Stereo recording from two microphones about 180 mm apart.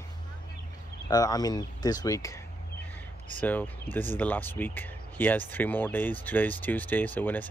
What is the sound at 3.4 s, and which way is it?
Speech, 10° left (ahead or behind).